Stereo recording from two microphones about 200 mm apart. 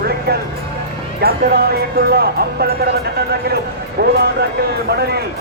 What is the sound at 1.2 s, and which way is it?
Speech, 50° right (ahead or behind).